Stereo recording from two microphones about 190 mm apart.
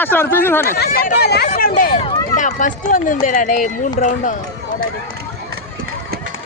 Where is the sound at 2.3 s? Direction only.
40° left (ahead or behind).